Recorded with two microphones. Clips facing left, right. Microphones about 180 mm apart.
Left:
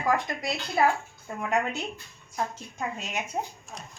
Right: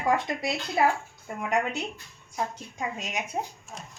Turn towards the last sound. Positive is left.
turn(degrees=-15)  # may be behind; listen again after turning